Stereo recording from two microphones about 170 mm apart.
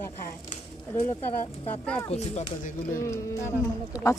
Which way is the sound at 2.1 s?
45° left (ahead or behind).